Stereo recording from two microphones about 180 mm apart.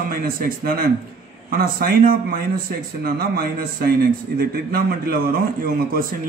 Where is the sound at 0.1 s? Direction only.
55° right (ahead or behind).